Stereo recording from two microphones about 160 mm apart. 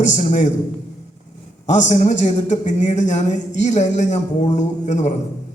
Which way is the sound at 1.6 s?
50° left (ahead or behind).